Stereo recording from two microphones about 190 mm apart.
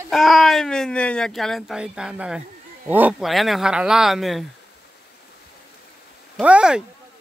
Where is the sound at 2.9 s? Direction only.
10° right (ahead or behind).